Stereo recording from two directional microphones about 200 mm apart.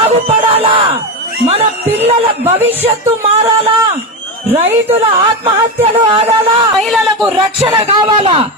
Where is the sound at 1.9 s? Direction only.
10° right (ahead or behind).